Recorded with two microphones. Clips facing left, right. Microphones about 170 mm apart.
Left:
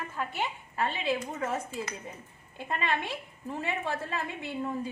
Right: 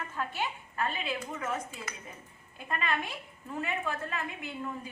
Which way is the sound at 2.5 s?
25° left (ahead or behind).